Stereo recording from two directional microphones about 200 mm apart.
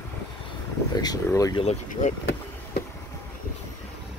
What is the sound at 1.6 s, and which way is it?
Speech, 35° left (ahead or behind).